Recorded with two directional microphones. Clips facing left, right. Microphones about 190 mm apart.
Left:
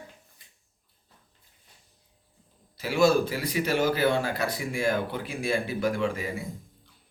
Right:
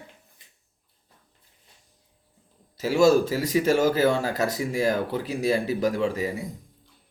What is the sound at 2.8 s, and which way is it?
Speech, 40° right (ahead or behind).